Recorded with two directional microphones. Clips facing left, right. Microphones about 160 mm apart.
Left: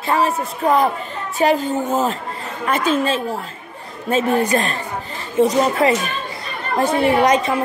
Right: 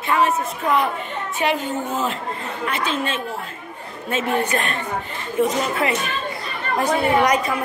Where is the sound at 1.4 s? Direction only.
40° left (ahead or behind).